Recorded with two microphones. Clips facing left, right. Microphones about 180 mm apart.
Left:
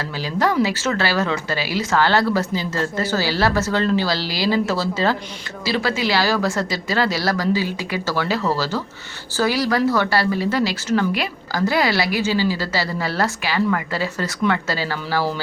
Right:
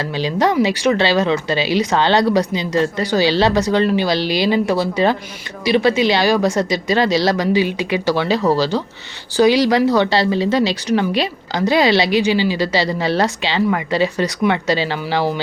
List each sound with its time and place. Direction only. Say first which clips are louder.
0.0 s speech: right 4 dB; 20° right (ahead or behind)